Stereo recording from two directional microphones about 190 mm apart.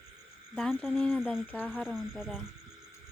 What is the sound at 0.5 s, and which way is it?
Speech, 5° left (ahead or behind).